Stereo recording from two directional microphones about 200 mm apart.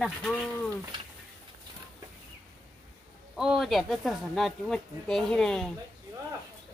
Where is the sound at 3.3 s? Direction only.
Centre (ahead or behind).